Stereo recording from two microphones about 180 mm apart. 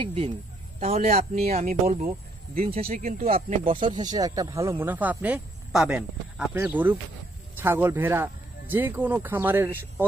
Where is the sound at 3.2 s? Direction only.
30° right (ahead or behind).